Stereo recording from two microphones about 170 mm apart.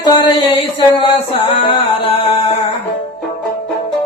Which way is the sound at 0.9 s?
30° left (ahead or behind).